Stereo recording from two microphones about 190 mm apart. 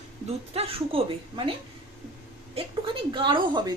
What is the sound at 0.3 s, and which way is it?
A woman's voice, 30° right (ahead or behind).